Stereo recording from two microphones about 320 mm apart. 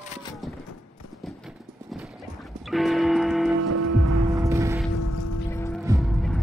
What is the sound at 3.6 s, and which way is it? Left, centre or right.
Music, right.